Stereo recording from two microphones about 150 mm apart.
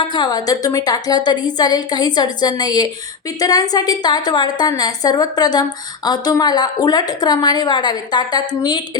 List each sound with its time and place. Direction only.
0.1 s a woman's voice: 30° left (ahead or behind)